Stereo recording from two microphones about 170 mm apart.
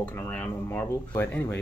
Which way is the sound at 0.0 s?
10° left (ahead or behind).